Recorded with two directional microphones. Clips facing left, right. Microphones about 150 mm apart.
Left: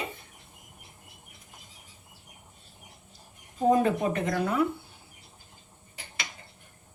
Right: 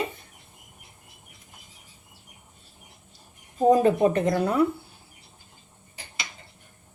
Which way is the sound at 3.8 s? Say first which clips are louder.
Right 6 dB; 35° right (ahead or behind).